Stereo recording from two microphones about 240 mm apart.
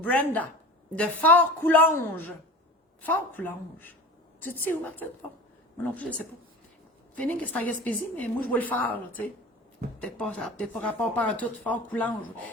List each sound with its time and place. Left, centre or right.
0.0 s a woman's voice: centre
7.2 s speech: centre